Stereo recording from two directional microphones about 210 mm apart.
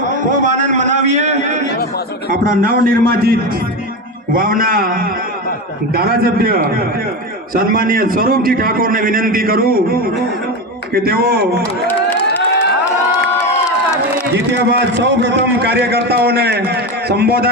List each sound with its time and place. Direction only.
0.3 s a sound: 35° right (ahead or behind)
2.3 s a man's voice: 40° right (ahead or behind)
14.3 s a man's voice: 55° right (ahead or behind)